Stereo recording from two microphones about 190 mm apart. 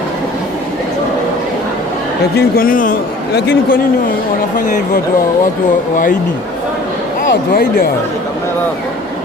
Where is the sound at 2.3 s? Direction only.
50° left (ahead or behind).